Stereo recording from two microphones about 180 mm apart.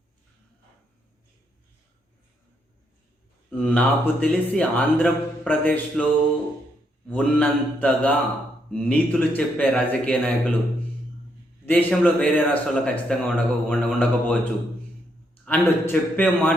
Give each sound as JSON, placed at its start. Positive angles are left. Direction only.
{"t": 3.5, "sound": "a man's voice", "side_deg": 10}
{"t": 7.1, "sound": "a man's voice", "side_deg": 5}
{"t": 11.6, "sound": "a man's voice", "side_deg": 10}
{"t": 15.4, "sound": "a man's voice", "side_deg": 10}